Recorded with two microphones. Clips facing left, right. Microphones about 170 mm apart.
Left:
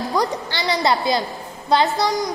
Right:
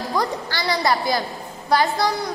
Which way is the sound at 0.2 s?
20° left (ahead or behind).